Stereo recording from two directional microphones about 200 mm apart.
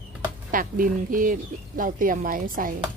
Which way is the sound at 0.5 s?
45° right (ahead or behind).